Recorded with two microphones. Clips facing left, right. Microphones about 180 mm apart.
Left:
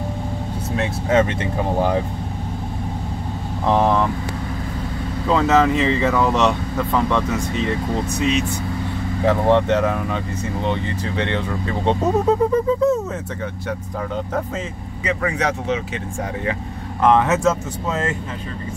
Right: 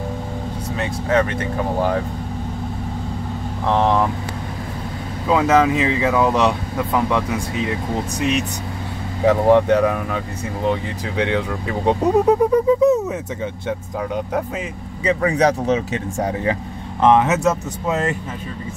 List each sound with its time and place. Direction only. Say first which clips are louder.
1.1 s speech: left 1 dB; 20° left (ahead or behind)
3.7 s speech: even; 5° left (ahead or behind)
5.3 s speech: right 1 dB; 10° right (ahead or behind)
9.2 s speech: right 3 dB; 15° right (ahead or behind)
15.0 s speech: right 5 dB; 35° right (ahead or behind)
17.0 s speech: right 1 dB; 20° right (ahead or behind)